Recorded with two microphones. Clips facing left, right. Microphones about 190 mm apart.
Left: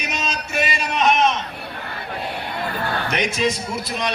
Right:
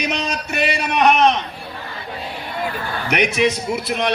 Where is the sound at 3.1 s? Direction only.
70° right (ahead or behind).